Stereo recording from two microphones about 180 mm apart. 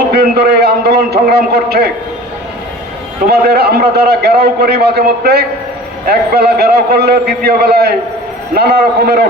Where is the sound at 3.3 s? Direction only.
60° right (ahead or behind).